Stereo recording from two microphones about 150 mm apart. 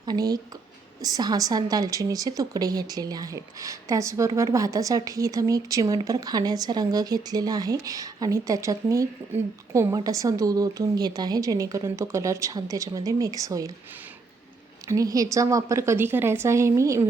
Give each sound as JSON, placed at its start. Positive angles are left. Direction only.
{"t": 0.0, "sound": "speech", "side_deg": -25}
{"t": 14.8, "sound": "speech", "side_deg": -20}